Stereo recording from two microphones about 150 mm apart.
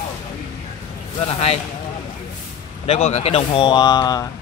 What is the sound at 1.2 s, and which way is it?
Speech, 45° left (ahead or behind).